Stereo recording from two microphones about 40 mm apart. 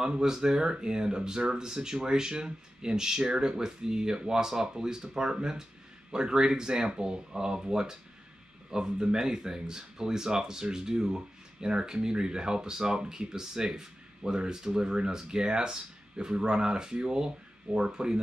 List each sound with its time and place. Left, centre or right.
0.0 s speech: centre